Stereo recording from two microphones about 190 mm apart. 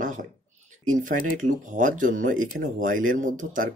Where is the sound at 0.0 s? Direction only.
45° right (ahead or behind).